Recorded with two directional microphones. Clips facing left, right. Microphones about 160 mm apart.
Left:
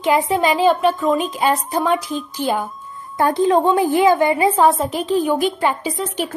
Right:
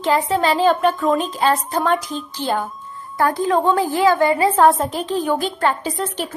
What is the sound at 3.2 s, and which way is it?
A woman's voice, 20° left (ahead or behind).